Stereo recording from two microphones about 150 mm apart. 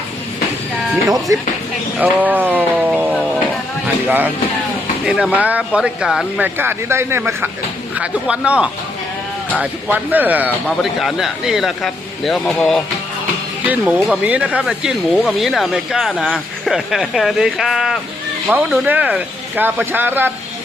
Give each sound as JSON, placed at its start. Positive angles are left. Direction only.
{"t": 1.0, "sound": "speech", "side_deg": -25}
{"t": 2.0, "sound": "speech", "side_deg": -10}
{"t": 6.4, "sound": "speech", "side_deg": -15}
{"t": 13.7, "sound": "speech", "side_deg": -5}